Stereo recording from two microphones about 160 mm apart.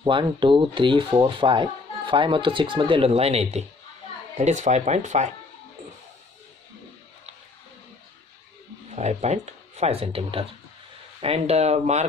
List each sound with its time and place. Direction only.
0.0 s speech: 30° right (ahead or behind); by 5.3 s 45° right (ahead or behind)
8.9 s speech: 45° right (ahead or behind)